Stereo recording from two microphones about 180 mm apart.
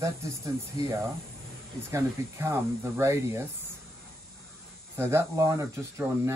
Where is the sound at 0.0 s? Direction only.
15° right (ahead or behind).